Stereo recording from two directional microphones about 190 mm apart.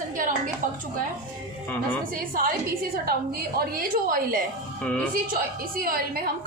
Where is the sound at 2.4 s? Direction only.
50° right (ahead or behind).